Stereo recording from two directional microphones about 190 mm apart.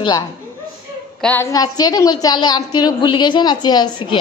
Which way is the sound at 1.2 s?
10° left (ahead or behind).